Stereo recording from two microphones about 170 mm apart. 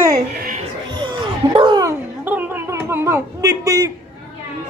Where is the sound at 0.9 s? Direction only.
25° right (ahead or behind).